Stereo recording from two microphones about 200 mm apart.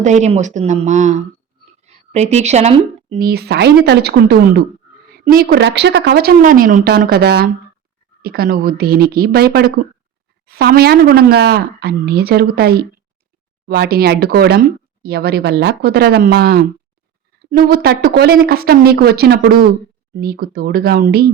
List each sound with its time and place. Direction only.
0.0 s speech: 35° right (ahead or behind)
3.2 s a woman's voice: 50° right (ahead or behind)